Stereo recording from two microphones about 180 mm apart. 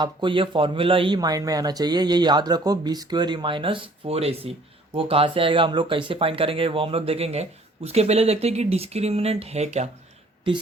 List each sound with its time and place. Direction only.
0.0 s speech: 25° right (ahead or behind)